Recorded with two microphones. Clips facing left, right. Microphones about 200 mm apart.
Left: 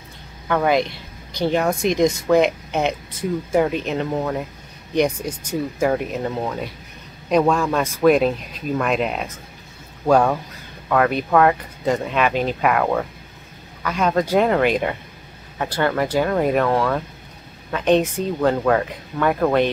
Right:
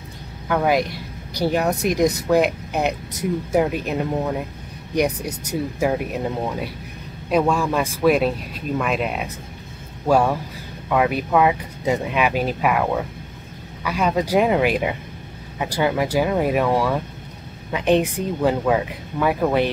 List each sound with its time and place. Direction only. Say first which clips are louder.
0.5 s speech: left 1 dB; 5° right (ahead or behind)
5.3 s speech: left 1 dB; 40° right (ahead or behind)
5.8 s speech: left 2 dB; 5° right (ahead or behind)